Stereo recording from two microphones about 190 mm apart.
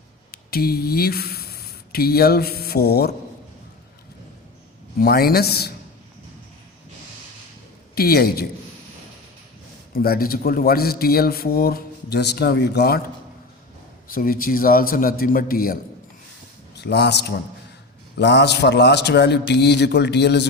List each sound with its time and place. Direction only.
0.3 s speech: 55° left (ahead or behind)
4.9 s a man's voice: 55° left (ahead or behind)
7.9 s speech: 55° left (ahead or behind)
9.9 s speech: 50° left (ahead or behind)
14.1 s speech: 50° left (ahead or behind)
16.7 s a man's voice: 60° left (ahead or behind)